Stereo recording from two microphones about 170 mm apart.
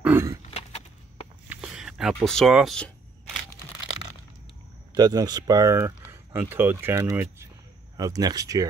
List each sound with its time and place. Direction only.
0.0 s a sound: 15° right (ahead or behind)
1.5 s speech: 5° right (ahead or behind)
4.9 s speech: 25° right (ahead or behind)